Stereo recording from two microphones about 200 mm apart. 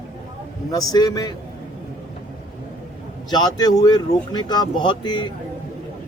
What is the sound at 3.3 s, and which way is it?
Speech, 20° left (ahead or behind).